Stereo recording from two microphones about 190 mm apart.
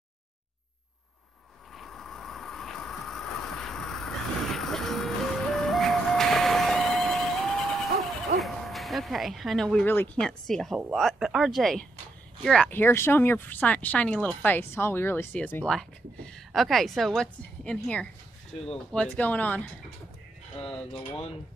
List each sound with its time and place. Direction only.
1.8 s vehicle: centre (ahead or behind)
8.4 s speech: centre (ahead or behind)